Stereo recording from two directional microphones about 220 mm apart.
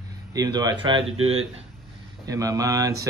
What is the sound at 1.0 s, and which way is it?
Speech, 65° right (ahead or behind).